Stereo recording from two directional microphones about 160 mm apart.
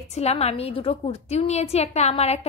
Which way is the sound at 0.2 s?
40° left (ahead or behind).